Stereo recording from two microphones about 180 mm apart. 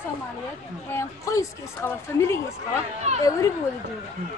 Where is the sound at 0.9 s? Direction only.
15° left (ahead or behind).